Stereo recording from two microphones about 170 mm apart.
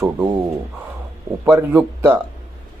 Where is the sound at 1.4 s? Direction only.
10° right (ahead or behind).